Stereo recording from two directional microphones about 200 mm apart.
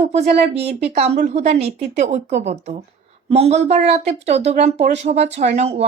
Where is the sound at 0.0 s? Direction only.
30° right (ahead or behind).